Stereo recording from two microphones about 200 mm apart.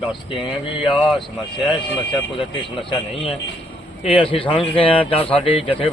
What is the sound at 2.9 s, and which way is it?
Speech, 25° left (ahead or behind).